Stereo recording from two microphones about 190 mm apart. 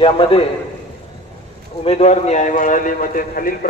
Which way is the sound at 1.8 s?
35° left (ahead or behind).